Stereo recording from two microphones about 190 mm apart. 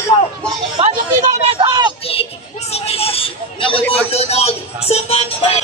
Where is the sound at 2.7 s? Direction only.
30° left (ahead or behind).